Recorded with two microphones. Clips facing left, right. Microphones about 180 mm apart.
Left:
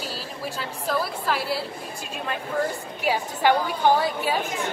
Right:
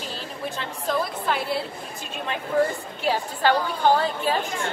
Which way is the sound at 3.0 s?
15° left (ahead or behind).